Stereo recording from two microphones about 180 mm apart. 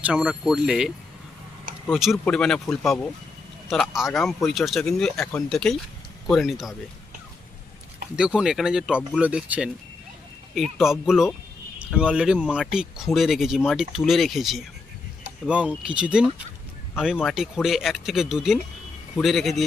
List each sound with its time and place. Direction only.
0.0 s speech: 5° right (ahead or behind)
8.1 s speech: 5° right (ahead or behind)